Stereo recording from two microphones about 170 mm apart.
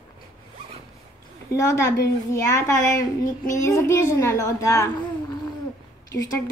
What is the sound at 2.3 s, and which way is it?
A woman's voice, 20° left (ahead or behind).